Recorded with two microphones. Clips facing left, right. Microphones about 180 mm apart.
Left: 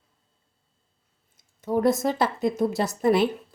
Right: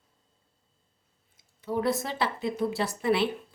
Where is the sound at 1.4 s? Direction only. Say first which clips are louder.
Left 6 dB; 45° left (ahead or behind).